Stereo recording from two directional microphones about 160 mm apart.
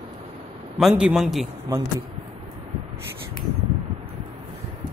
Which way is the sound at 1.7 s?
20° right (ahead or behind).